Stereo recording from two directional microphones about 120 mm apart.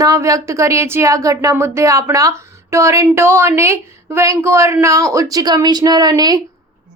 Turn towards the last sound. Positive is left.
turn(degrees=-35)  # may be behind; listen again after turning